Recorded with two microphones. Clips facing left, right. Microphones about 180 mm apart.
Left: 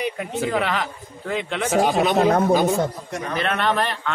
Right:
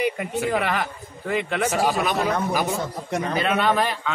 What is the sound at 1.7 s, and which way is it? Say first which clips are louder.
Speech: left 7 dB; 25° left (ahead or behind).